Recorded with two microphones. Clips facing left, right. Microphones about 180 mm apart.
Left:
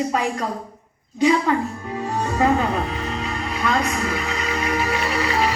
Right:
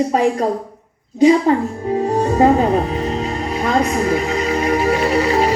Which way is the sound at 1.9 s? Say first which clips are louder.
Right 7 dB; 40° right (ahead or behind).